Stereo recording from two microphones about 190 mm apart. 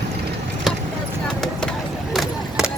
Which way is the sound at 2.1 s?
Centre (ahead or behind).